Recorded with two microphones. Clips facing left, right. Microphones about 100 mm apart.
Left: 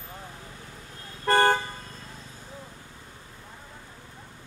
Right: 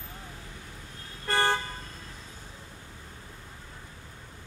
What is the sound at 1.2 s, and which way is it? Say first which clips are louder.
Toot: left 6 dB; 50° left (ahead or behind).